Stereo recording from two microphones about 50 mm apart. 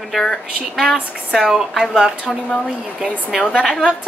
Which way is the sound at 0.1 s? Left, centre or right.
Centre.